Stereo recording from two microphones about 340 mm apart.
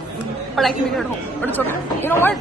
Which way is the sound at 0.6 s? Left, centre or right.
Centre.